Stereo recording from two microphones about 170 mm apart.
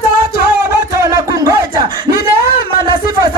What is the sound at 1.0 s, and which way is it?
Music, 20° right (ahead or behind).